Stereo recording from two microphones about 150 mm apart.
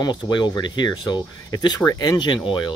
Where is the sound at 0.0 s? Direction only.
30° left (ahead or behind).